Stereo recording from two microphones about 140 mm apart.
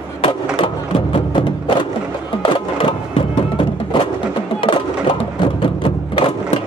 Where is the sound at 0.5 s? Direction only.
35° left (ahead or behind).